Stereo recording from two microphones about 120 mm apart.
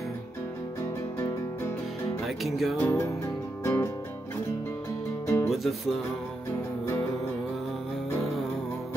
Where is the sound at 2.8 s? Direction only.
20° left (ahead or behind).